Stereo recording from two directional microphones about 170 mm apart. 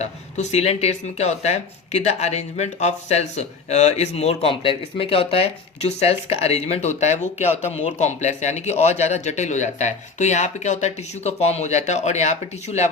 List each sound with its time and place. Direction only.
0.0 s speech: 40° left (ahead or behind)